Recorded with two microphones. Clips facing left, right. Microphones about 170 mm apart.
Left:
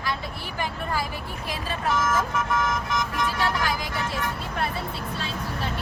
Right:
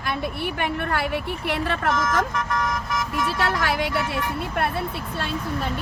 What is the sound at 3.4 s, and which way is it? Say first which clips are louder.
Speech: right 5 dB; 70° right (ahead or behind).